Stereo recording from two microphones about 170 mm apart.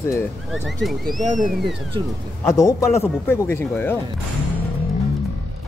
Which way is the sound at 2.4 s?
15° left (ahead or behind).